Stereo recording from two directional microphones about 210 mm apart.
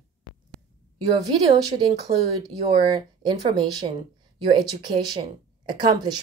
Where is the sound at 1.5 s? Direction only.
25° right (ahead or behind).